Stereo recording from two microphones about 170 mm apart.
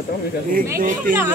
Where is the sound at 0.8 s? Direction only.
55° right (ahead or behind).